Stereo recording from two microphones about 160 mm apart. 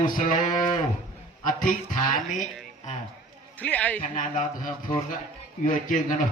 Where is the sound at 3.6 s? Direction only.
10° left (ahead or behind).